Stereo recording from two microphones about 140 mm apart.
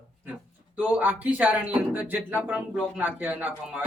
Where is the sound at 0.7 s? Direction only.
10° right (ahead or behind).